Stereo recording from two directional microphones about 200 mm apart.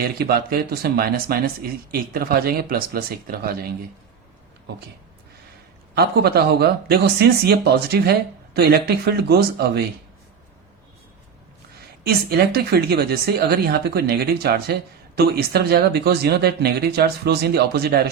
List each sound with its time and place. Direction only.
0.0 s a woman's voice: 50° right (ahead or behind)
5.9 s a woman's voice: 50° right (ahead or behind)
12.0 s a woman's voice: 50° right (ahead or behind)